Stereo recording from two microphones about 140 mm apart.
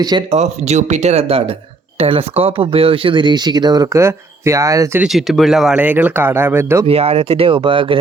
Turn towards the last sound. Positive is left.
turn(degrees=-35)  # may be behind; listen again after turning